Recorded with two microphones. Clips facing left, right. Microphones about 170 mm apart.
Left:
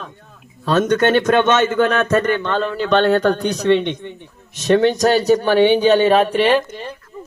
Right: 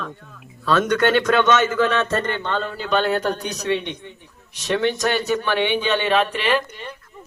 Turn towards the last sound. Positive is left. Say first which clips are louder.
# left 6 dB
turn(degrees=40)  # may be behind; listen again after turning